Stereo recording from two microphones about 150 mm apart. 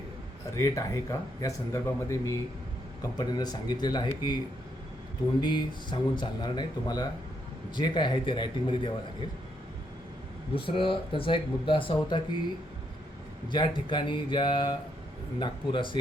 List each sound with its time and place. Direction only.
0.5 s speech: 20° left (ahead or behind)
5.4 s speech: 30° left (ahead or behind)
10.5 s speech: 35° left (ahead or behind)
13.5 s speech: 30° left (ahead or behind)